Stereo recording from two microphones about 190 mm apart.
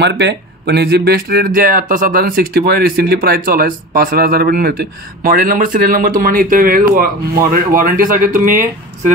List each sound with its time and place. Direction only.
0.0 s speech: 65° right (ahead or behind); by 8.5 s 45° right (ahead or behind)